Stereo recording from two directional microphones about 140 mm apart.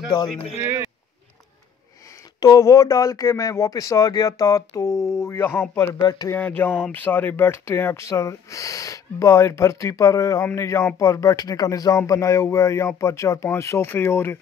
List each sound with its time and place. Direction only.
0.6 s speech: 20° right (ahead or behind)
2.4 s speech: 25° left (ahead or behind)
6.0 s speech: 30° left (ahead or behind)
6.3 s speech: 10° left (ahead or behind)